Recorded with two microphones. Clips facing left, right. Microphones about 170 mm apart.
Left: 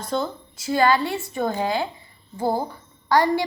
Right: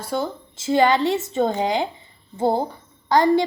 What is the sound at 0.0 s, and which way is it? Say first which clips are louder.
Speech: even; 10° right (ahead or behind).